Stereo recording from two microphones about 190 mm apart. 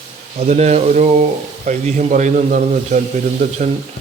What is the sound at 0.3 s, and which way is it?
A man's voice, 35° right (ahead or behind).